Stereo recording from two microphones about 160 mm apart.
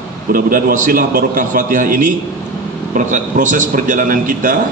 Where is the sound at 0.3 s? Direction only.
65° right (ahead or behind).